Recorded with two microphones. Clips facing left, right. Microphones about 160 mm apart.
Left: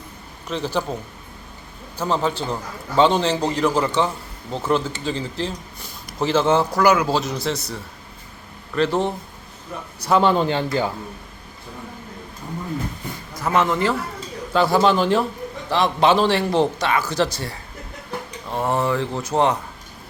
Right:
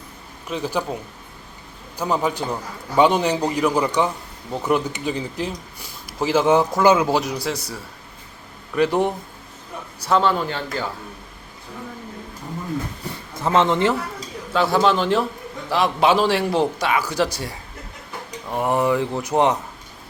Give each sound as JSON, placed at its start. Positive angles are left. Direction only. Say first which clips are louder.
{"t": 0.4, "sound": "speech", "louder": "even", "side_deg": -10}
{"t": 2.0, "sound": "speech", "louder": "even", "side_deg": -10}
{"t": 10.1, "sound": "speech", "louder": "left 2 dB", "side_deg": 15}
{"t": 13.3, "sound": "a man's voice", "louder": "right 2 dB", "side_deg": -25}
{"t": 14.5, "sound": "a man's voice", "louder": "left 1 dB", "side_deg": 0}